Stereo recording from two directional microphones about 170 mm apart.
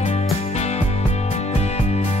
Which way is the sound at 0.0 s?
40° left (ahead or behind).